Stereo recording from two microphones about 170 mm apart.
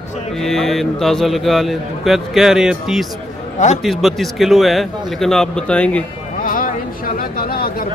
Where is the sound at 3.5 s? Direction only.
45° left (ahead or behind).